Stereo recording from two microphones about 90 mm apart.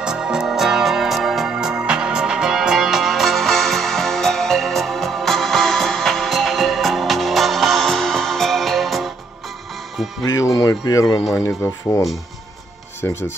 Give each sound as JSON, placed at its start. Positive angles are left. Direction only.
{"t": 0.0, "sound": "music", "side_deg": -10}
{"t": 10.2, "sound": "speech", "side_deg": 40}
{"t": 11.3, "sound": "speech", "side_deg": 25}
{"t": 13.0, "sound": "speech", "side_deg": 30}